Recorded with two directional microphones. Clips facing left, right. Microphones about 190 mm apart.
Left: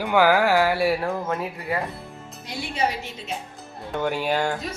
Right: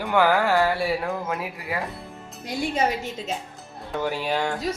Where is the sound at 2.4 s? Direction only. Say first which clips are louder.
Right 6 dB; 45° right (ahead or behind).